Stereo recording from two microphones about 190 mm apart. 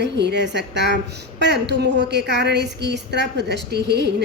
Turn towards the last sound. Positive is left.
turn(degrees=-60)  # may be behind; listen again after turning